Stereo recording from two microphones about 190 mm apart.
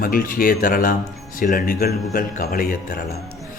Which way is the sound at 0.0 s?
50° left (ahead or behind).